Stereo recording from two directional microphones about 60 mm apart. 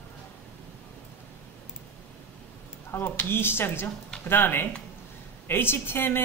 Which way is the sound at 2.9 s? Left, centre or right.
Left.